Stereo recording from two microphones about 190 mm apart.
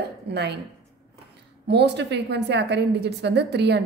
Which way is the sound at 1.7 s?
65° right (ahead or behind).